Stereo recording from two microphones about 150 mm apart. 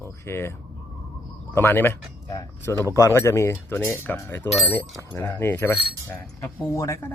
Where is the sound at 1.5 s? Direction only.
15° left (ahead or behind).